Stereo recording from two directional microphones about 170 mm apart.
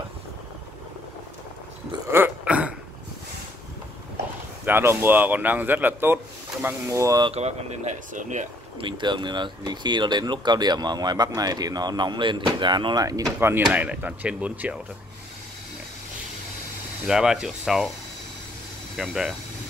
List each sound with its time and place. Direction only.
2.0 s a sound: 15° right (ahead or behind)
4.6 s speech: 10° right (ahead or behind)
7.2 s speech: 40° right (ahead or behind)
8.7 s speech: 30° right (ahead or behind); by 14.8 s 10° right (ahead or behind)
17.0 s speech: 5° right (ahead or behind)
18.9 s speech: centre (ahead or behind)